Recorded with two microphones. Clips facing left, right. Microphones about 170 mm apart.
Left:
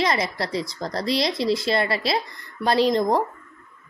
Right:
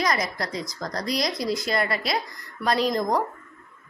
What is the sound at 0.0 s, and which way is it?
Speech, 25° left (ahead or behind).